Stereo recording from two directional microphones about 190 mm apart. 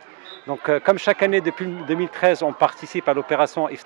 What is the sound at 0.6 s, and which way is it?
Speech, 15° right (ahead or behind).